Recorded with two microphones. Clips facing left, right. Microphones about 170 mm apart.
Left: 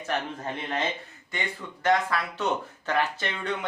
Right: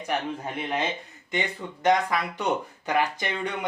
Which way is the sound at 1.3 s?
20° right (ahead or behind).